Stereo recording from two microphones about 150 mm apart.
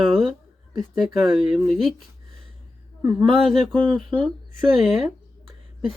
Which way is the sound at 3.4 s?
Centre (ahead or behind).